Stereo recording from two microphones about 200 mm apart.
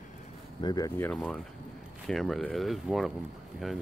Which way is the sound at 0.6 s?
20° left (ahead or behind).